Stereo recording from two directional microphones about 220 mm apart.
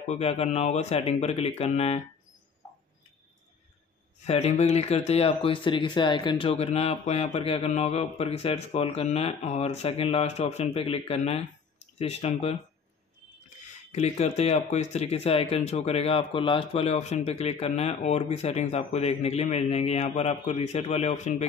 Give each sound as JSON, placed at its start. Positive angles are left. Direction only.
{"t": 0.1, "sound": "speech", "side_deg": 30}
{"t": 4.2, "sound": "speech", "side_deg": 30}
{"t": 13.9, "sound": "speech", "side_deg": 30}